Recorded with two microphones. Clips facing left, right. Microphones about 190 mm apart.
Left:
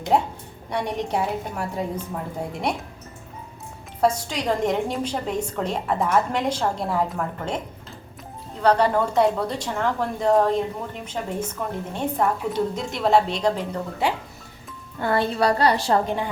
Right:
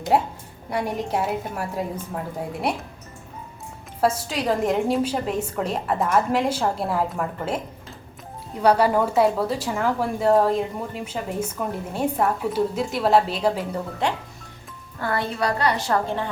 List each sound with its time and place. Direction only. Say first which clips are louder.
0.1 s a woman's voice: even; 5° right (ahead or behind)
4.0 s a woman's voice: even; 5° right (ahead or behind)
8.6 s a woman's voice: right 1 dB; 10° right (ahead or behind)
14.0 s a woman's voice: left 1 dB; 5° left (ahead or behind)
14.9 s a woman's voice: left 4 dB; 25° left (ahead or behind)
16.0 s a woman's voice: left 1 dB; 15° left (ahead or behind)